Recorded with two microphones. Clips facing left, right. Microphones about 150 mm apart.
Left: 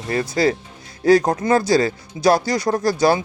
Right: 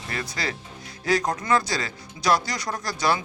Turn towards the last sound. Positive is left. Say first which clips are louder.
# left 9 dB
turn(degrees=30)  # may be behind; listen again after turning